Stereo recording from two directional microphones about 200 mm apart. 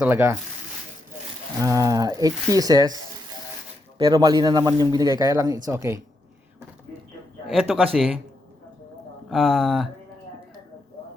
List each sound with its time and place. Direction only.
0.0 s speech: 10° right (ahead or behind)
1.6 s speech: 15° right (ahead or behind)
7.4 s a man's voice: centre (ahead or behind)
9.3 s speech: centre (ahead or behind)